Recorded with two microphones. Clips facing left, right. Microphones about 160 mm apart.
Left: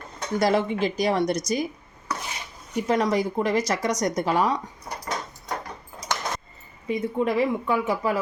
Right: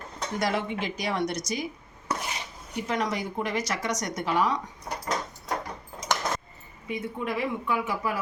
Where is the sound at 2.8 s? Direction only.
35° left (ahead or behind).